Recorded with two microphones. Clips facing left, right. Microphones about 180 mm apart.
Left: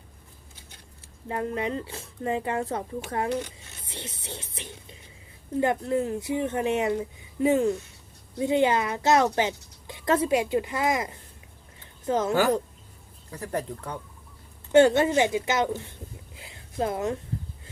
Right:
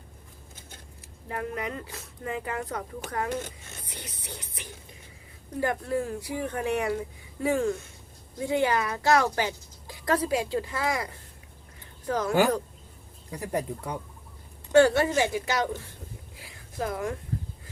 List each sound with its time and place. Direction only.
1.3 s speech: 25° left (ahead or behind)
3.2 s speech: 45° right (ahead or behind)
3.8 s music: 25° left (ahead or behind)
5.5 s speech: 20° left (ahead or behind)
13.3 s speech: 10° right (ahead or behind)
14.7 s speech: 20° left (ahead or behind)
16.3 s a sound: 25° left (ahead or behind)